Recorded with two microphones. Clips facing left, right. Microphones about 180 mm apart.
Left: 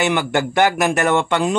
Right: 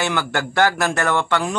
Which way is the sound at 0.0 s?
20° left (ahead or behind).